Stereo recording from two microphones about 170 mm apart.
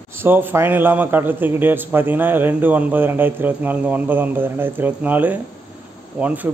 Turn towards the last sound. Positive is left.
turn(degrees=-10)  # may be behind; listen again after turning